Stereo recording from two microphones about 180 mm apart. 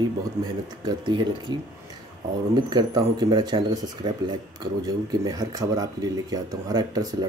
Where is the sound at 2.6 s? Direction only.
25° right (ahead or behind).